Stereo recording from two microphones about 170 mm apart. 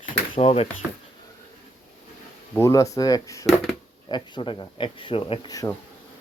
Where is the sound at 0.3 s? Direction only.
35° left (ahead or behind).